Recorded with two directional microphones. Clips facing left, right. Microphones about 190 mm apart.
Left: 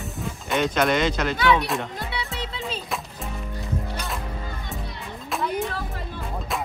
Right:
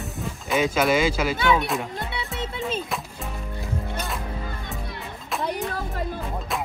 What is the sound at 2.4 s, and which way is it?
Music, 50° right (ahead or behind).